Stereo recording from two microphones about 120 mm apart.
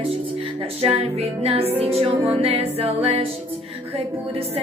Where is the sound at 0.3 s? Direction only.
55° right (ahead or behind).